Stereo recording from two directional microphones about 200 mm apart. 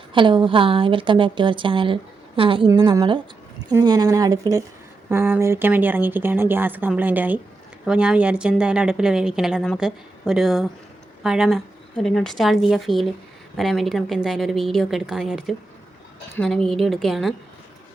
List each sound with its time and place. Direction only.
0.1 s a woman's voice: 25° right (ahead or behind); by 17.3 s centre (ahead or behind)